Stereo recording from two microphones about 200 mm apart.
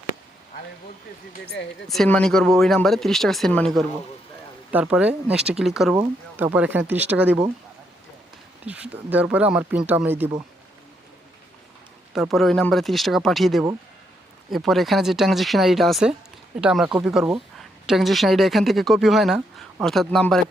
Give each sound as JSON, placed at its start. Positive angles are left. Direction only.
{"t": 1.3, "sound": "speech", "side_deg": 50}
{"t": 1.9, "sound": "speech", "side_deg": 5}
{"t": 8.6, "sound": "speech", "side_deg": -5}
{"t": 12.1, "sound": "speech", "side_deg": 0}